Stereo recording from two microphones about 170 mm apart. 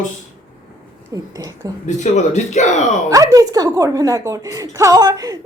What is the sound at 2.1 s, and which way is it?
Speech, 45° left (ahead or behind).